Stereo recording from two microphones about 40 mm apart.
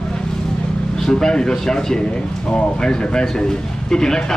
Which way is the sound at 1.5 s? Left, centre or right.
Centre.